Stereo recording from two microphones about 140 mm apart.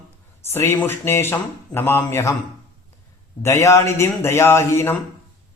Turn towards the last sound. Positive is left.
turn(degrees=20)  # may be behind; listen again after turning